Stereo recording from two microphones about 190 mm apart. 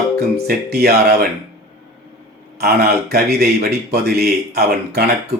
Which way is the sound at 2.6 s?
55° right (ahead or behind).